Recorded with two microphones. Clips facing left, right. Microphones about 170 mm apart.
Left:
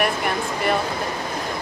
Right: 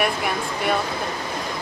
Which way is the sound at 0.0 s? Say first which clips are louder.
Left 1 dB; centre (ahead or behind).